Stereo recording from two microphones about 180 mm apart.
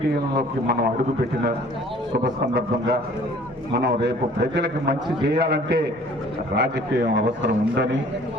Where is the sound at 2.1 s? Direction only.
65° right (ahead or behind).